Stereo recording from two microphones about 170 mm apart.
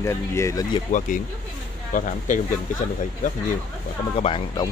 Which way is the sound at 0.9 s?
45° left (ahead or behind).